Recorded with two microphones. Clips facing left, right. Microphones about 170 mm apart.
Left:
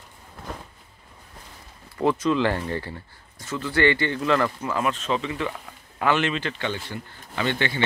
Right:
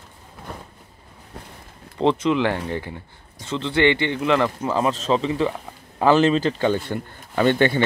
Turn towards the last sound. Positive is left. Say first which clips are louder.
# right 8 dB
turn(degrees=-50)  # may be behind; listen again after turning